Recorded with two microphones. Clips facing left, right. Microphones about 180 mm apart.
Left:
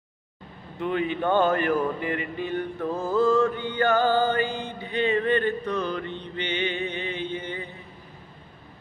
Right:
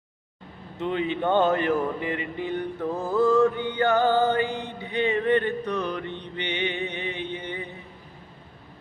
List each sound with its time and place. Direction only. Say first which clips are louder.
0.8 s mantra: even; 20° right (ahead or behind)